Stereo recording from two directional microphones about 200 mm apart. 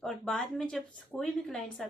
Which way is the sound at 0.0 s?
5° left (ahead or behind).